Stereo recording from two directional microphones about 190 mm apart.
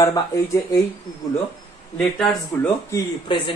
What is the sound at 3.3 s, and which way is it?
Speech, 25° left (ahead or behind).